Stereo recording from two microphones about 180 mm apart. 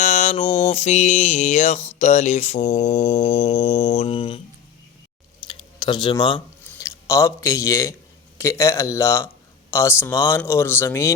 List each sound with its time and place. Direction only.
0.0 s music: 40° left (ahead or behind)
5.5 s a sound: 25° left (ahead or behind)
6.7 s speech: 15° left (ahead or behind)